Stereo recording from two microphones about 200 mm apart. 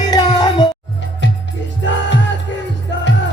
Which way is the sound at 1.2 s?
65° left (ahead or behind).